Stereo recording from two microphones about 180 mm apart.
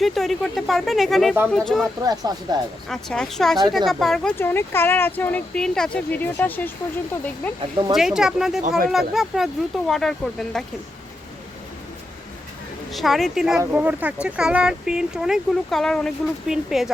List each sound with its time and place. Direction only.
0.0 s speech: centre (ahead or behind)
2.0 s speech: 20° right (ahead or behind)
2.9 s speech: centre (ahead or behind)
7.9 s speech: 5° right (ahead or behind)
12.9 s speech: centre (ahead or behind)